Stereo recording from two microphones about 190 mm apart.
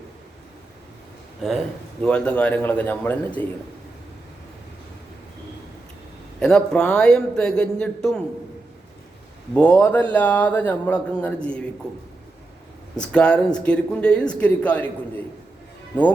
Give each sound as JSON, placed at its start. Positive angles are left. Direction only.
{"t": 2.0, "sound": "a man's voice", "side_deg": 5}
{"t": 6.4, "sound": "speech", "side_deg": 5}
{"t": 9.6, "sound": "a man's voice", "side_deg": 10}
{"t": 13.0, "sound": "speech", "side_deg": 5}